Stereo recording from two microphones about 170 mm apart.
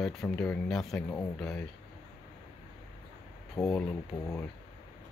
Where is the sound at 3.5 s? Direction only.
20° left (ahead or behind).